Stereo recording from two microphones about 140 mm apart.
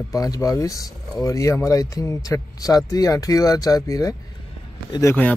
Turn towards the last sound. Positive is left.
turn(degrees=15)  # may be behind; listen again after turning